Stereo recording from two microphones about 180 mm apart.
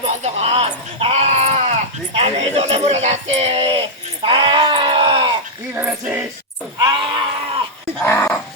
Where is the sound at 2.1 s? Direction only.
35° right (ahead or behind).